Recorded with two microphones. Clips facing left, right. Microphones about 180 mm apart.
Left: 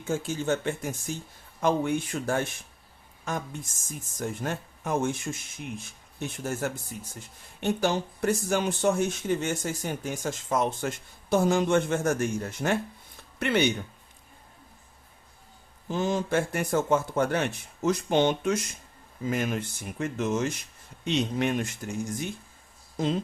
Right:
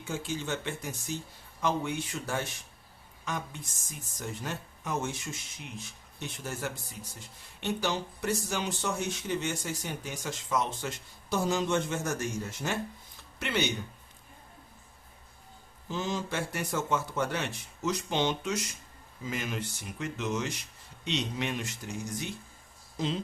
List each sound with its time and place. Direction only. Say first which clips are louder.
0.0 s speech: left 6 dB; 45° left (ahead or behind)
15.9 s speech: left 6 dB; 55° left (ahead or behind)